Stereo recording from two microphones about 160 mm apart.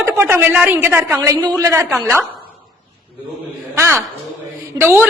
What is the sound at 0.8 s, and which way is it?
A woman's voice, 15° right (ahead or behind).